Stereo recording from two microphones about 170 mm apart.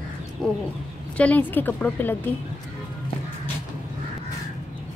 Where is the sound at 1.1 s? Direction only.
10° left (ahead or behind).